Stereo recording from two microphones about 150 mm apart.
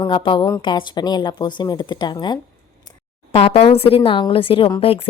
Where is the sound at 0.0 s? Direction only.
30° left (ahead or behind).